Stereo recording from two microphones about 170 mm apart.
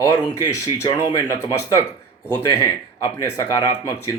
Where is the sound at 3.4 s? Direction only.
20° left (ahead or behind).